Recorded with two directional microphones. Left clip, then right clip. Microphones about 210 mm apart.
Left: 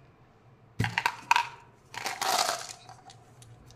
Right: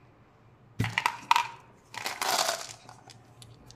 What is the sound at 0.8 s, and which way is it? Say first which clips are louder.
Crushing: even; centre (ahead or behind).